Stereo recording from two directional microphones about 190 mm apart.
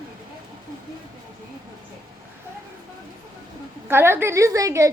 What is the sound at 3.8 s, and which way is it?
A woman's voice, 10° right (ahead or behind).